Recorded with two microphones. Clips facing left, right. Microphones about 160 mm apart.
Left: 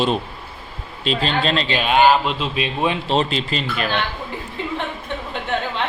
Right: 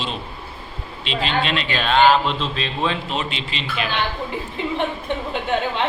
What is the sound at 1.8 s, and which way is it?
Speech, 10° left (ahead or behind).